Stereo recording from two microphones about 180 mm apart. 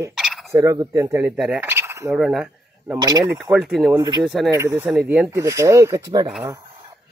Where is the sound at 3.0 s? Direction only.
25° right (ahead or behind).